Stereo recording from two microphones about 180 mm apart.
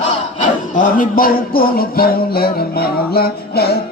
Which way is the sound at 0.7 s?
50° left (ahead or behind).